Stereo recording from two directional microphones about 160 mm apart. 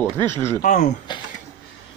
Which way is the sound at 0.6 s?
50° left (ahead or behind).